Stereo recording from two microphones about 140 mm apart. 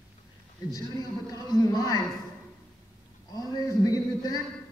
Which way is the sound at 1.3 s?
25° left (ahead or behind).